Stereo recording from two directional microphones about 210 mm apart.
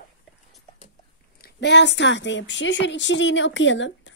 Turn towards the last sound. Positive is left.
turn(degrees=60)  # may be behind; listen again after turning